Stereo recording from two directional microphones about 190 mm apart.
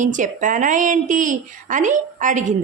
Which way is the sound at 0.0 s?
40° right (ahead or behind).